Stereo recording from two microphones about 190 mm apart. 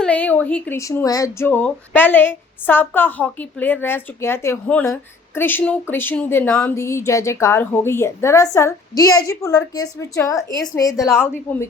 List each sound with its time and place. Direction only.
0.0 s speech: 5° left (ahead or behind)